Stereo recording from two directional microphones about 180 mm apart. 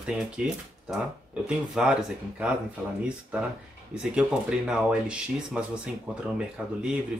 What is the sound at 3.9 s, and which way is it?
Speech, 5° right (ahead or behind).